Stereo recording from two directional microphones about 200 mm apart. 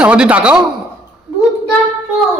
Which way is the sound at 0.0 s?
5° right (ahead or behind).